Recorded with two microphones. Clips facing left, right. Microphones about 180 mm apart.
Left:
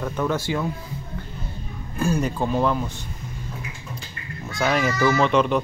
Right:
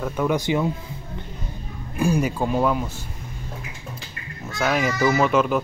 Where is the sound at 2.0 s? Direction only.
10° right (ahead or behind).